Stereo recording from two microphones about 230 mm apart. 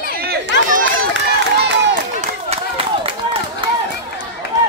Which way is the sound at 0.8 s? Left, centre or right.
Right.